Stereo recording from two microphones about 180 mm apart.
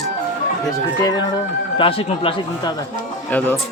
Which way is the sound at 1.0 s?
20° left (ahead or behind).